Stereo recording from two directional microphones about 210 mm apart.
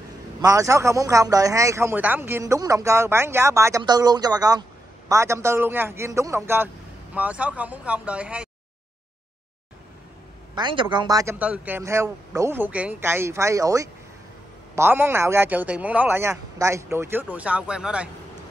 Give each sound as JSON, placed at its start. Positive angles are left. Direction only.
{"t": 0.4, "sound": "a man's voice", "side_deg": -15}
{"t": 10.5, "sound": "a man's voice", "side_deg": -20}